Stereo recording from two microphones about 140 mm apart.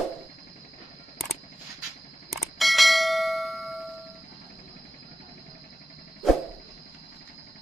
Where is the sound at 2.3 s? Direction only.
Centre (ahead or behind).